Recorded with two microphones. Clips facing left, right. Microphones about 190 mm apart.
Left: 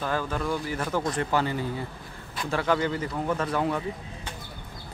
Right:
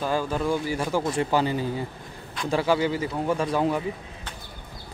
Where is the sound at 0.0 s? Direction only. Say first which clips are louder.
Right 3 dB; 10° right (ahead or behind).